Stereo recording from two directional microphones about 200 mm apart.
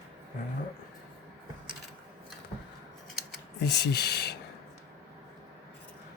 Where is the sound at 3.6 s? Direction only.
55° left (ahead or behind).